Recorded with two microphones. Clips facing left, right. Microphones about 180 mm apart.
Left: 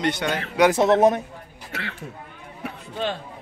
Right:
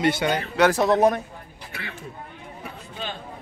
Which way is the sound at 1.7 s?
80° left.